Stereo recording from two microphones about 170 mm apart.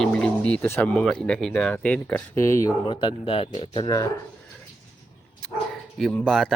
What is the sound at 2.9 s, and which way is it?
Speech, 30° left (ahead or behind).